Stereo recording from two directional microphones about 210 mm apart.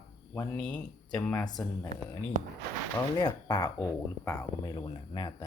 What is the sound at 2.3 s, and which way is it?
Speech, 35° right (ahead or behind).